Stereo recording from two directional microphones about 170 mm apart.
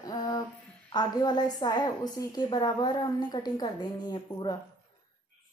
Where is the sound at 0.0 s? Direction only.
20° left (ahead or behind).